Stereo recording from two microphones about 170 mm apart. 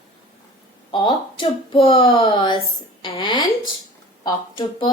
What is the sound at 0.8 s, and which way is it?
A woman's voice, 30° left (ahead or behind).